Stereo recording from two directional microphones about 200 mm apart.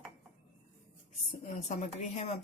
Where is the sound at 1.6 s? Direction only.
35° left (ahead or behind).